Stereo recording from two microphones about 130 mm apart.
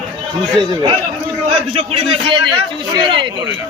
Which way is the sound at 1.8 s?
45° right (ahead or behind).